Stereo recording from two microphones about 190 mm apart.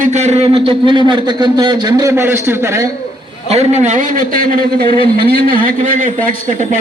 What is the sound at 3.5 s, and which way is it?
A man's voice, 35° right (ahead or behind).